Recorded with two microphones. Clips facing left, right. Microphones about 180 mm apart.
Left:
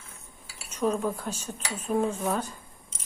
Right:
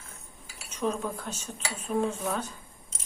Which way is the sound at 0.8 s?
10° left (ahead or behind).